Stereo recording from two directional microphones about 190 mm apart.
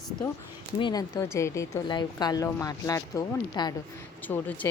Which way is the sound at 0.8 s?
20° left (ahead or behind).